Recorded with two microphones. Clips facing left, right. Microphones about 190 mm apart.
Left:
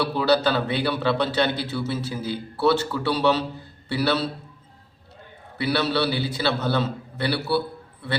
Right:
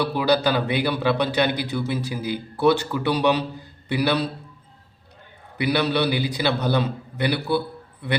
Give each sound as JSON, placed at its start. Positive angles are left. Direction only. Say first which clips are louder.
{"t": 0.0, "sound": "a man's voice", "louder": "even", "side_deg": -10}
{"t": 5.5, "sound": "a man's voice", "louder": "right 2 dB", "side_deg": -15}